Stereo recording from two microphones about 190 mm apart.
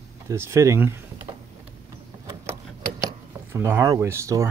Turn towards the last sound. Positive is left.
turn(degrees=-15)  # may be behind; listen again after turning